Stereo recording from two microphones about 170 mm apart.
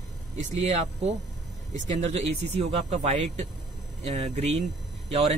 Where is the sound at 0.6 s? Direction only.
40° right (ahead or behind).